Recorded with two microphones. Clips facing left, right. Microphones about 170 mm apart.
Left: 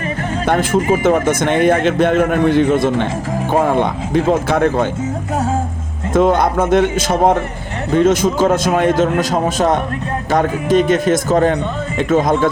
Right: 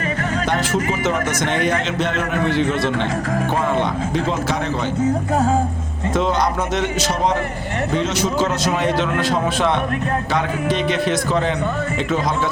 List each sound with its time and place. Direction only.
0.4 s a man's voice: 50° left (ahead or behind)
6.1 s a man's voice: 50° left (ahead or behind)